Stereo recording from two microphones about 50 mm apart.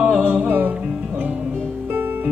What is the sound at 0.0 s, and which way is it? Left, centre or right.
Music, right.